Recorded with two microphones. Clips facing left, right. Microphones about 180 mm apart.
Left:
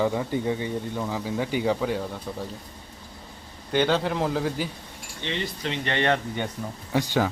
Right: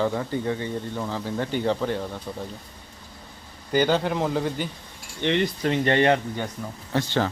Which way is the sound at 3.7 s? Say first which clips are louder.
Right 1 dB; centre (ahead or behind).